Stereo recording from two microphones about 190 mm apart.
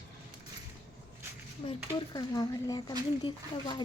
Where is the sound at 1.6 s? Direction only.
30° left (ahead or behind).